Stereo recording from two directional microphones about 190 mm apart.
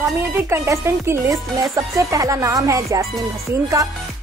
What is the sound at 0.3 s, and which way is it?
Music, 15° right (ahead or behind).